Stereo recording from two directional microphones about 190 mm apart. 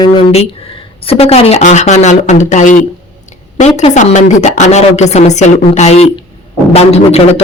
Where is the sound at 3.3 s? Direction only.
40° left (ahead or behind).